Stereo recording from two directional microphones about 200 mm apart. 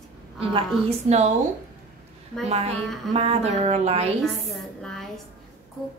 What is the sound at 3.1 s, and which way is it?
Speech, 30° right (ahead or behind).